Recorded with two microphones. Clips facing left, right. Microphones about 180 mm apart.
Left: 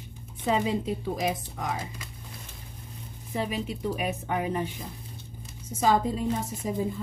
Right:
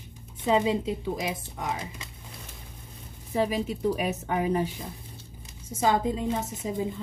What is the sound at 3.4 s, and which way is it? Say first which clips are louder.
Speech: right 4 dB; 40° right (ahead or behind).